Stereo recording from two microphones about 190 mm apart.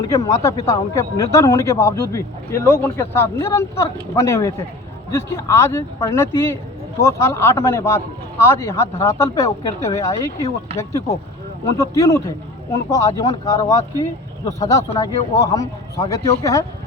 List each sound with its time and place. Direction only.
0.0 s speech: 15° left (ahead or behind)
11.8 s speech: 15° left (ahead or behind)